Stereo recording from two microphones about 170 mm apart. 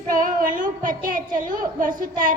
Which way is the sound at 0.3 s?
55° right (ahead or behind).